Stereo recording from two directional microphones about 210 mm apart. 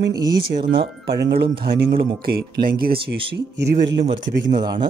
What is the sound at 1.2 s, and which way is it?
Speech, 50° right (ahead or behind).